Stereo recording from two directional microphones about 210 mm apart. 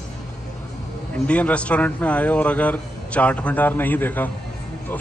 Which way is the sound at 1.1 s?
5° left (ahead or behind).